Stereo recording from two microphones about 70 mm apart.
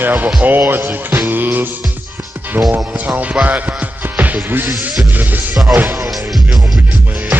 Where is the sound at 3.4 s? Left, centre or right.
Right.